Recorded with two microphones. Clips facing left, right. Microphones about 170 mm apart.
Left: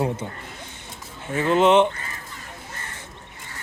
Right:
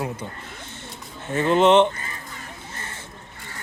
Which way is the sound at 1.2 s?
5° left (ahead or behind).